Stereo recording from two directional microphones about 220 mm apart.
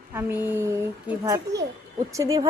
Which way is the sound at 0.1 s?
10° right (ahead or behind).